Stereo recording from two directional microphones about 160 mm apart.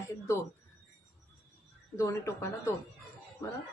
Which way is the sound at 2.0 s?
20° left (ahead or behind).